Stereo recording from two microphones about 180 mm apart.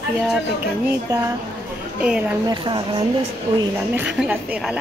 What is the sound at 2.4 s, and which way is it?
Speech, 25° right (ahead or behind).